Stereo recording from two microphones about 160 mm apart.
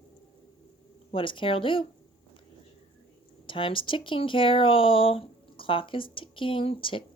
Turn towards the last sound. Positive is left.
turn(degrees=35)  # may be behind; listen again after turning